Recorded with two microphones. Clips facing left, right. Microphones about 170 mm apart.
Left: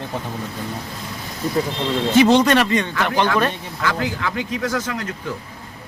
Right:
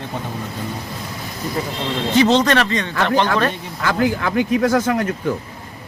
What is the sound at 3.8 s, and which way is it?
A man's voice, 45° right (ahead or behind).